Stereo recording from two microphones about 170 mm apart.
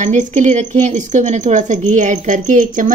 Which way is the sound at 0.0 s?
45° right (ahead or behind).